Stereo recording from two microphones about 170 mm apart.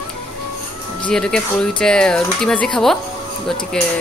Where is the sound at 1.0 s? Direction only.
5° left (ahead or behind).